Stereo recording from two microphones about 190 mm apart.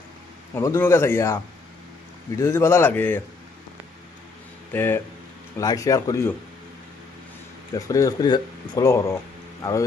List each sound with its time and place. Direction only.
0.5 s speech: 10° left (ahead or behind)
2.4 s speech: 15° left (ahead or behind)
4.7 s speech: 10° left (ahead or behind)
7.9 s speech: 15° left (ahead or behind)